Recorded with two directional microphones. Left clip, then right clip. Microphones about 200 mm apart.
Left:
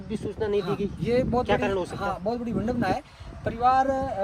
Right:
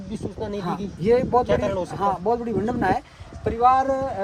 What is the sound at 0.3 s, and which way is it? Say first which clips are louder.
Speech: left 5 dB; 40° left (ahead or behind).